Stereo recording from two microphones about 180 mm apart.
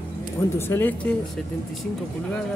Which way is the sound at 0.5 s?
15° left (ahead or behind).